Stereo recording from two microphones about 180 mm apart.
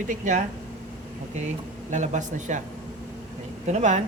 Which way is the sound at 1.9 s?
40° right (ahead or behind).